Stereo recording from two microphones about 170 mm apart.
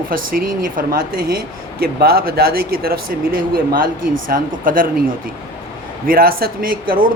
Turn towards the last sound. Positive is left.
turn(degrees=-60)  # may be behind; listen again after turning